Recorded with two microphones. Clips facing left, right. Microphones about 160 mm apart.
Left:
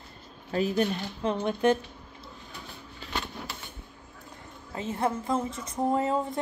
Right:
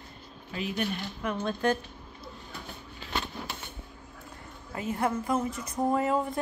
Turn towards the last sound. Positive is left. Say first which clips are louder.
# even
turn(degrees=25)  # may be behind; listen again after turning